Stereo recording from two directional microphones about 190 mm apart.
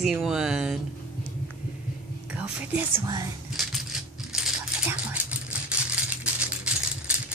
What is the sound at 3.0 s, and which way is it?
Speech, 20° right (ahead or behind).